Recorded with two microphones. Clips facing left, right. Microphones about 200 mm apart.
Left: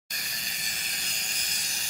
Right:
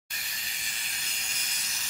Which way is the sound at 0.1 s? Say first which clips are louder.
Left 3 dB; 40° left (ahead or behind).